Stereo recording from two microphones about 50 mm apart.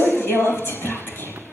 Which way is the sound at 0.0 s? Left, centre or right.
Left.